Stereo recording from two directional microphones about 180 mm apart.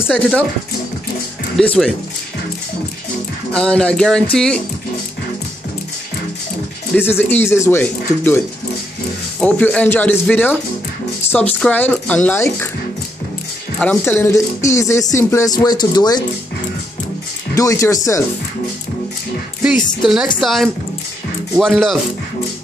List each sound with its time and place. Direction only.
1.6 s speech: 5° left (ahead or behind)
3.5 s speech: 5° left (ahead or behind)
6.9 s speech: 10° left (ahead or behind)
9.4 s speech: 5° left (ahead or behind)
11.6 s speech: 10° left (ahead or behind)
13.7 s speech: 10° left (ahead or behind)
17.6 s speech: 15° left (ahead or behind)
20.0 s speech: centre (ahead or behind)